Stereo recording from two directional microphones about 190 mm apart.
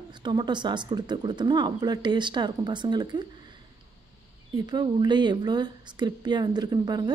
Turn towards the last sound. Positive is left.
turn(degrees=-20)  # may be behind; listen again after turning